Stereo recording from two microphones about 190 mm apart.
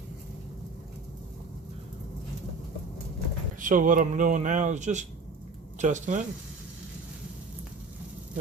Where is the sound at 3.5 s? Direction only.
45° right (ahead or behind).